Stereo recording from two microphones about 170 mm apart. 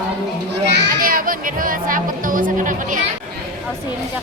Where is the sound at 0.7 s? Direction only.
75° right (ahead or behind); by 3.0 s 50° right (ahead or behind).